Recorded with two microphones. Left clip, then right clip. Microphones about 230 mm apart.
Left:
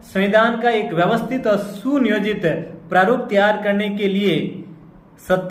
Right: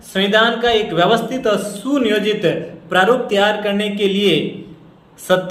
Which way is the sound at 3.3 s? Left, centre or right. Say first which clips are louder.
Even; right.